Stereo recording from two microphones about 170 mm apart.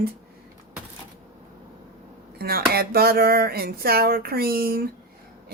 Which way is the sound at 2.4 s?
65° right (ahead or behind).